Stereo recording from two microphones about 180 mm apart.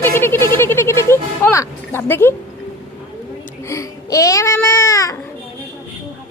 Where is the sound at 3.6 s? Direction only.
15° left (ahead or behind).